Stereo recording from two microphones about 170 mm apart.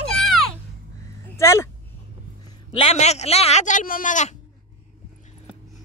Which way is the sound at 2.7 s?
35° left (ahead or behind).